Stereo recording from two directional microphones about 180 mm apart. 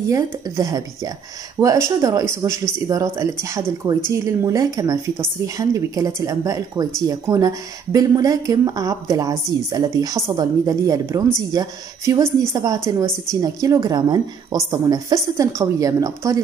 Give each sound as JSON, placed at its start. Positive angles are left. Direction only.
{"t": 0.1, "sound": "a woman's voice", "side_deg": -20}